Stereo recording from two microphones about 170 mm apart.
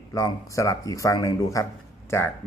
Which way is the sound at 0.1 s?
20° left (ahead or behind).